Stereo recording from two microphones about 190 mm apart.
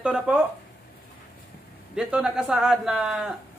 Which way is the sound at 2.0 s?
5° right (ahead or behind).